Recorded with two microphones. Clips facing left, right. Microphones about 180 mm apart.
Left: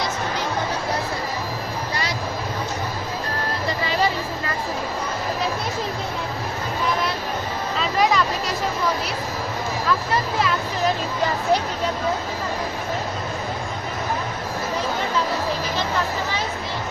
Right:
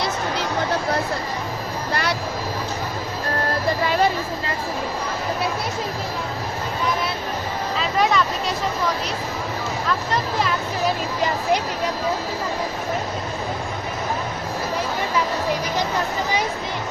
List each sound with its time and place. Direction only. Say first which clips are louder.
1.9 s vehicle: right 6 dB; 60° right (ahead or behind)
7.8 s music: even; centre (ahead or behind)